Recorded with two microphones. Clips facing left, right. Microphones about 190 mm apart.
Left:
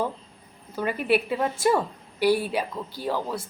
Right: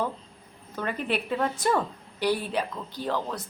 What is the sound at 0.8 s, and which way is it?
A woman's voice, 10° left (ahead or behind).